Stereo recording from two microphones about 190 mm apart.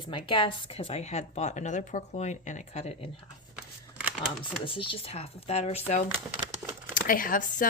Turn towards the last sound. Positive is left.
turn(degrees=45)  # may be behind; listen again after turning